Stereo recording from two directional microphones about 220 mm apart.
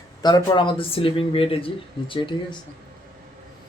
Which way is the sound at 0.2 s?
20° left (ahead or behind).